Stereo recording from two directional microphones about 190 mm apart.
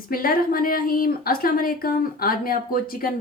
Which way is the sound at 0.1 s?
50° left (ahead or behind).